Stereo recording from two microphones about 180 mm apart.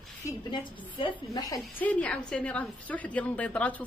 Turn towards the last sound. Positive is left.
turn(degrees=10)  # may be behind; listen again after turning